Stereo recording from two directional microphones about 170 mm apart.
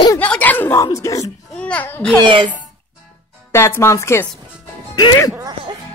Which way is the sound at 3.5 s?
15° left (ahead or behind).